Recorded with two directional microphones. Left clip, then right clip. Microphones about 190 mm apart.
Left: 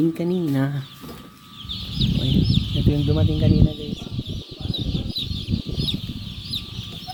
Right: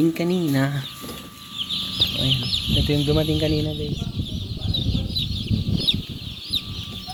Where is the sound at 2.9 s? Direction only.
5° left (ahead or behind).